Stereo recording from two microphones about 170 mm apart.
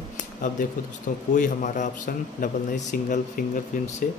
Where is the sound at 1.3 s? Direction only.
50° left (ahead or behind).